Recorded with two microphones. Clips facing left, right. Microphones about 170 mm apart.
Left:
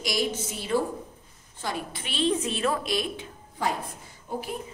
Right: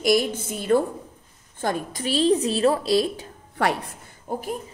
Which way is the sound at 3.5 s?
70° right (ahead or behind).